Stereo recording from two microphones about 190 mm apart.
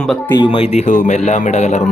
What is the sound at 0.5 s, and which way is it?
Speech, 35° left (ahead or behind).